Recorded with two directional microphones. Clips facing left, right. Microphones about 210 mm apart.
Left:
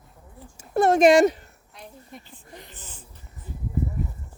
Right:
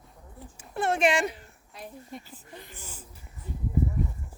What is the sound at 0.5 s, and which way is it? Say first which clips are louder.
Speech: left 9 dB; 40° left (ahead or behind).